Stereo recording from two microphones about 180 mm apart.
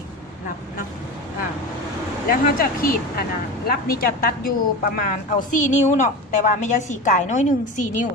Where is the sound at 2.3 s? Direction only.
50° left (ahead or behind).